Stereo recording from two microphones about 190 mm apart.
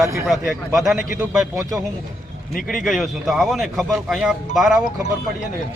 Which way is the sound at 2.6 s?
Centre (ahead or behind).